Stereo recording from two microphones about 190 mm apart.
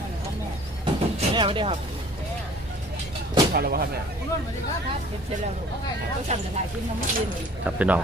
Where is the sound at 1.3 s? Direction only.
25° right (ahead or behind).